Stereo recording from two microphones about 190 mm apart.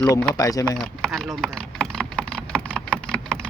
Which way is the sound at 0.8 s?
5° left (ahead or behind).